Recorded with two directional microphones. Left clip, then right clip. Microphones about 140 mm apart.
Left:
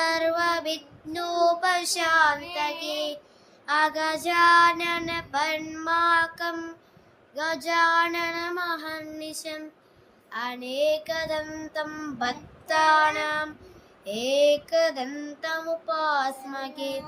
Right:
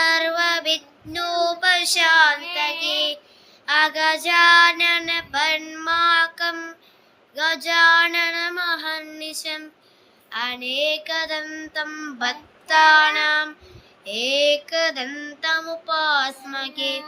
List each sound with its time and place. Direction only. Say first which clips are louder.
0.0 s child singing: right 5 dB; 45° left (ahead or behind)
2.7 s child singing: right 8 dB; 15° left (ahead or behind)
3.7 s child singing: right 5 dB; 45° left (ahead or behind)
10.3 s child singing: right 5 dB; 40° left (ahead or behind)